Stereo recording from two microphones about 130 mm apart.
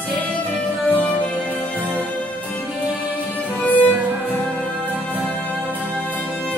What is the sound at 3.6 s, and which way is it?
Music, 15° left (ahead or behind).